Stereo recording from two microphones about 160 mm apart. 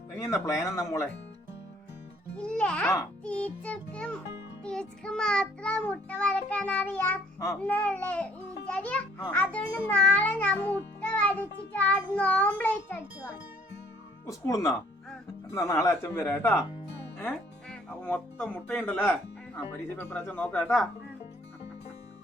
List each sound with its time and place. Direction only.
0.2 s speech: 20° left (ahead or behind)
2.3 s child singing: 5° left (ahead or behind)
14.3 s speech: 20° left (ahead or behind)
15.5 s child singing: 20° left (ahead or behind)
17.2 s speech: 10° left (ahead or behind)
20.0 s child singing: 15° left (ahead or behind)